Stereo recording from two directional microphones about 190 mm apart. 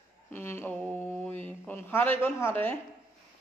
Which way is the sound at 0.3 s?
10° left (ahead or behind).